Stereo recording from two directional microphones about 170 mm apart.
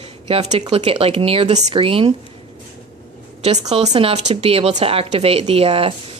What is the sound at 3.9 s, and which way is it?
A woman's voice, 35° right (ahead or behind).